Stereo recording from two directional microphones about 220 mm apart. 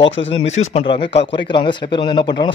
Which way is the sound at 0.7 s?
25° left (ahead or behind).